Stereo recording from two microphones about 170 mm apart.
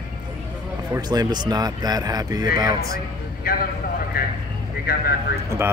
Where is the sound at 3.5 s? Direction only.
60° left (ahead or behind).